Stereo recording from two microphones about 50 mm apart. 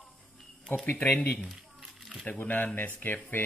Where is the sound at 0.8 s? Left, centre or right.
Left.